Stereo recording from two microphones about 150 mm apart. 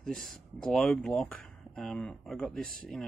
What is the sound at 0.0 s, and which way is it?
Speech, 5° left (ahead or behind).